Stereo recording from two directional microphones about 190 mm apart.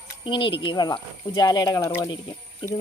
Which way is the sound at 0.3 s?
25° left (ahead or behind).